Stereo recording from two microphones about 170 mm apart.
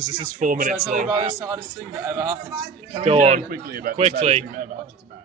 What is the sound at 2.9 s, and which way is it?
Speech, 35° right (ahead or behind).